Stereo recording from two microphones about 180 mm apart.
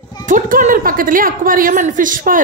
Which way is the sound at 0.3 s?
45° right (ahead or behind).